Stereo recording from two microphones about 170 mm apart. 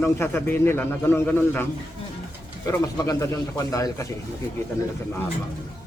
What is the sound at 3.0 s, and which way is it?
Speech, 20° left (ahead or behind).